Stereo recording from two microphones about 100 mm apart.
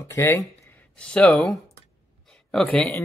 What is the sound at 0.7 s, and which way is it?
Speech, 10° left (ahead or behind).